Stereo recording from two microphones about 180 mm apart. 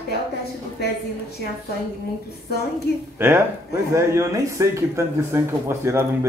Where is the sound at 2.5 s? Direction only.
60° left (ahead or behind).